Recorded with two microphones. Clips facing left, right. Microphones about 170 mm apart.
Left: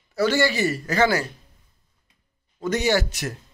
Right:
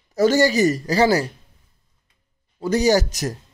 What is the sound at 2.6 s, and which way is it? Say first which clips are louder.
Speech: right 4 dB; 35° right (ahead or behind).